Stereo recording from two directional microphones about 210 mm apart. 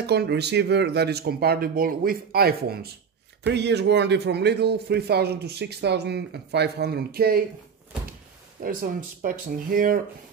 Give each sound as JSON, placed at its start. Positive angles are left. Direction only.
{"t": 0.0, "sound": "a man's voice", "side_deg": -50}
{"t": 8.6, "sound": "a man's voice", "side_deg": -40}